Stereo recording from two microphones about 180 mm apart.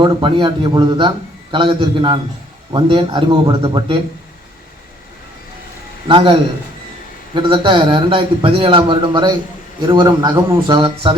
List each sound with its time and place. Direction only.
0.0 s a man's voice: 25° right (ahead or behind)
6.1 s a man's voice: 30° right (ahead or behind)
7.3 s a man's voice: 25° right (ahead or behind)